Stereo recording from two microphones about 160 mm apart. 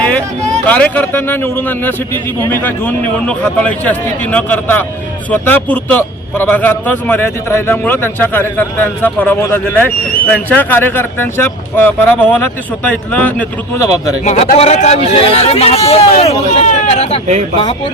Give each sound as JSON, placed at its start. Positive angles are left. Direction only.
{"t": 0.7, "sound": "a man's voice", "side_deg": 10}
{"t": 2.4, "sound": "a man's voice", "side_deg": 10}
{"t": 14.3, "sound": "speech", "side_deg": 45}